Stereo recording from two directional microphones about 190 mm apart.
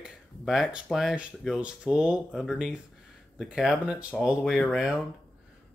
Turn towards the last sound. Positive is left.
turn(degrees=0)  # may be behind; listen again after turning